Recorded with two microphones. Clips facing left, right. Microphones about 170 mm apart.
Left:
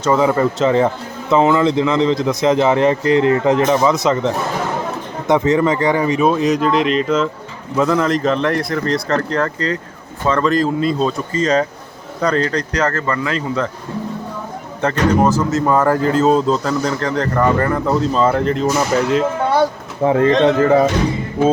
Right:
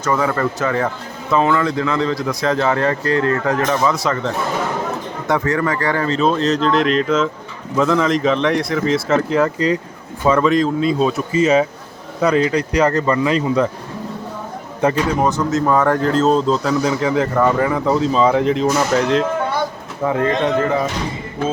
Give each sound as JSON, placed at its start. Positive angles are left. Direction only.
{"t": 0.0, "sound": "speech", "side_deg": 20}
{"t": 14.8, "sound": "a man's voice", "side_deg": -10}
{"t": 15.2, "sound": "speech", "side_deg": 0}
{"t": 20.0, "sound": "speech", "side_deg": 30}